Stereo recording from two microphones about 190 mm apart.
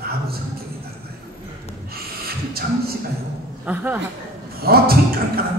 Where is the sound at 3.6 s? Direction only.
10° right (ahead or behind).